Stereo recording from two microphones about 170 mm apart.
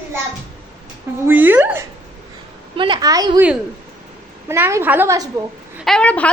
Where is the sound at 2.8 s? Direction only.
25° right (ahead or behind).